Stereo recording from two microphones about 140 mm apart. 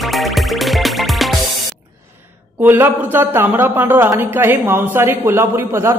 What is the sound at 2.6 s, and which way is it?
A man's voice, 15° right (ahead or behind).